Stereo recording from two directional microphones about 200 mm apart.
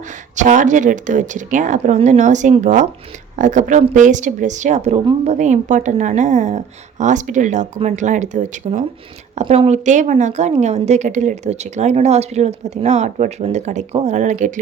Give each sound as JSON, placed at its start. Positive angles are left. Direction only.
{"t": 0.3, "sound": "a woman's voice", "side_deg": -40}